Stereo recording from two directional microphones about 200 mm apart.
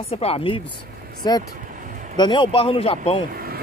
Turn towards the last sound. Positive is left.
turn(degrees=-50)  # may be behind; listen again after turning